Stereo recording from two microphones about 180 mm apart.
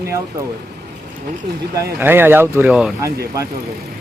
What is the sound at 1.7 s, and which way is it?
Speech, 10° right (ahead or behind).